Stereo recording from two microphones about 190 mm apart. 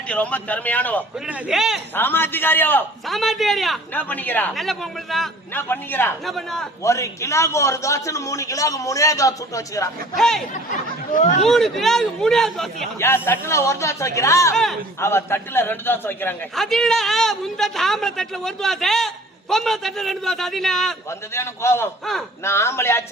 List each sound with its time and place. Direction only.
0.1 s a man's voice: 5° left (ahead or behind)
1.3 s a man's voice: centre (ahead or behind)
2.0 s a man's voice: 10° left (ahead or behind)
5.5 s a man's voice: 10° left (ahead or behind)
6.8 s a man's voice: 15° left (ahead or behind)
10.2 s a man's voice: centre (ahead or behind)
10.5 s speech: 40° left (ahead or behind)
11.4 s a man's voice: centre (ahead or behind)
13.0 s a man's voice: 10° left (ahead or behind)
14.5 s a man's voice: centre (ahead or behind)
15.0 s a man's voice: 15° left (ahead or behind)
21.1 s a man's voice: 15° left (ahead or behind)